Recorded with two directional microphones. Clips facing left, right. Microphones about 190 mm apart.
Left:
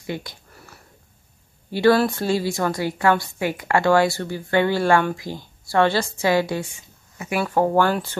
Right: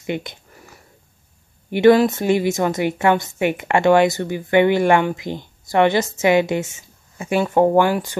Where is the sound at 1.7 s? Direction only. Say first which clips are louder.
Right 4 dB; 20° right (ahead or behind).